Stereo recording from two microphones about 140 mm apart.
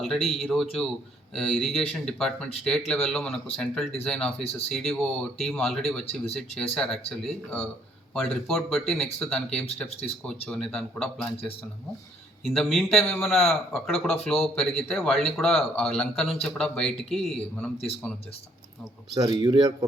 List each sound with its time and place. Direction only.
0.0 s speech: centre (ahead or behind)
4.4 s speech: 45° left (ahead or behind)
4.7 s speech: centre (ahead or behind)
12.4 s speech: centre (ahead or behind)
19.1 s speech: 30° right (ahead or behind)